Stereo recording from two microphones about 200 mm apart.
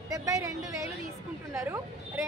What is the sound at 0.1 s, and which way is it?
Speech, 15° right (ahead or behind).